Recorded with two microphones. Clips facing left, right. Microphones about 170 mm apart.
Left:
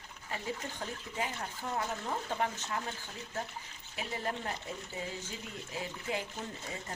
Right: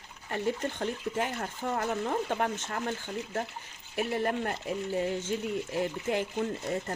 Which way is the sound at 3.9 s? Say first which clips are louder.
Right 8 dB; 60° right (ahead or behind).